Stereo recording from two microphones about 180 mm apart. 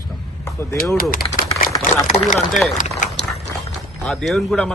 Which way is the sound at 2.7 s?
45° left (ahead or behind).